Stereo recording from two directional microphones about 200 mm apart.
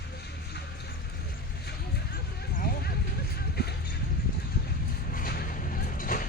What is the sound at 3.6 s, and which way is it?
Music, 55° left (ahead or behind).